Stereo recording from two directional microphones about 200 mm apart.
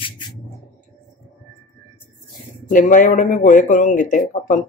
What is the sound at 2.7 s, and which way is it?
Speech, 40° left (ahead or behind).